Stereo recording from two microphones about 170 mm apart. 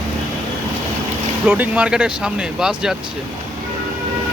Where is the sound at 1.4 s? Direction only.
10° right (ahead or behind).